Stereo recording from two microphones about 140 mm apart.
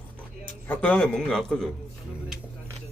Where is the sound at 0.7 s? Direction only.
10° left (ahead or behind).